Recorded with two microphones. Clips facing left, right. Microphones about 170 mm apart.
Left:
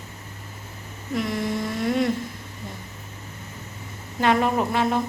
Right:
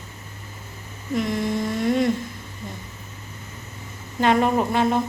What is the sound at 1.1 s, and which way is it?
A woman's voice, centre (ahead or behind).